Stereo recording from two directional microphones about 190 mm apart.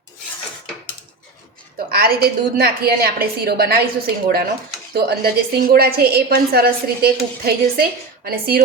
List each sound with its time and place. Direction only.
1.9 s a woman's voice: 55° right (ahead or behind)